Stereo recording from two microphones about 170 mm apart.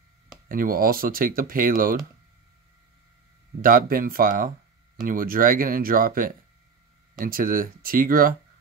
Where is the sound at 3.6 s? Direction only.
55° right (ahead or behind).